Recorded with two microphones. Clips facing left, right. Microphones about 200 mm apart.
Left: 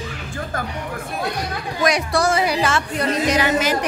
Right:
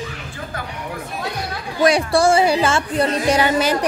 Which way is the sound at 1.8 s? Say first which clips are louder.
Right 4 dB; 30° right (ahead or behind).